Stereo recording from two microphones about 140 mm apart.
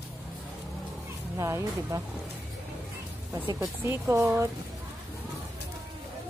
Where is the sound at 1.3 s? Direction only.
20° right (ahead or behind).